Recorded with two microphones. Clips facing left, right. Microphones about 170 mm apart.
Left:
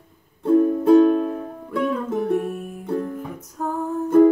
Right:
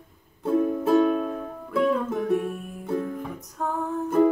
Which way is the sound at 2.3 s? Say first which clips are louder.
Left 2 dB; 40° left (ahead or behind).